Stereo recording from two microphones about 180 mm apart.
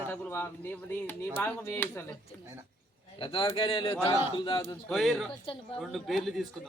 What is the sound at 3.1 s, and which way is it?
A man's voice, 25° left (ahead or behind).